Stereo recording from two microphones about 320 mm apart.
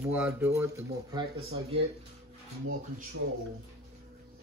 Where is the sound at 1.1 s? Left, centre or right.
Centre.